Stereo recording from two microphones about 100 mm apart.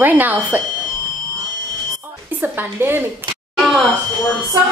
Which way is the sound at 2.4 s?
20° right (ahead or behind).